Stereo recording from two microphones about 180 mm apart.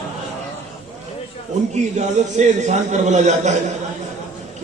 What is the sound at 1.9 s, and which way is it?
A man's voice, 40° right (ahead or behind).